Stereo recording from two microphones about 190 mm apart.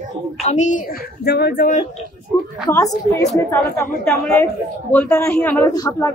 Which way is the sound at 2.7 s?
15° left (ahead or behind).